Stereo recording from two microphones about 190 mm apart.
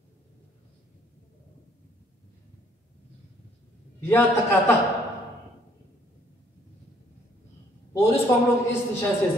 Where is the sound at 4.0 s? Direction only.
10° left (ahead or behind).